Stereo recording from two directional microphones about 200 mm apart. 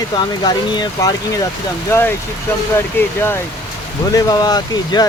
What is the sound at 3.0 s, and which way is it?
Speech, 10° left (ahead or behind).